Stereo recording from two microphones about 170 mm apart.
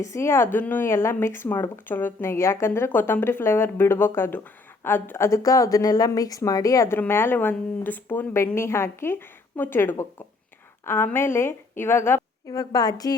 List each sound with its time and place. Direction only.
0.0 s speech: 15° left (ahead or behind)